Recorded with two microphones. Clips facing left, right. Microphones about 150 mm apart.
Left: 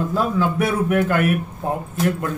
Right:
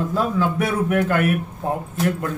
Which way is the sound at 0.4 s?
5° left (ahead or behind).